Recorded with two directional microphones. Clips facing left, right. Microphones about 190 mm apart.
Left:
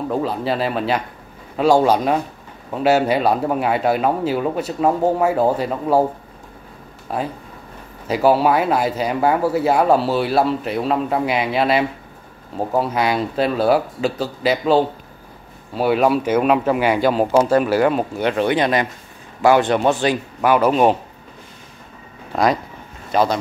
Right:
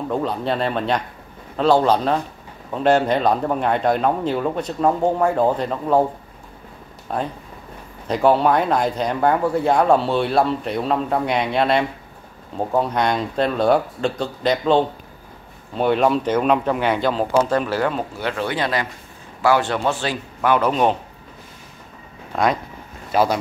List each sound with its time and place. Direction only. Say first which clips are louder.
0.1 s speech: even; 5° left (ahead or behind)
7.1 s speech: left 1 dB; 5° left (ahead or behind)
22.3 s speech: left 2 dB; centre (ahead or behind)